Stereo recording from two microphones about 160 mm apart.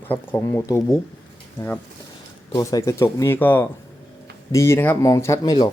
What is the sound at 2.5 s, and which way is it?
Speech, 20° left (ahead or behind).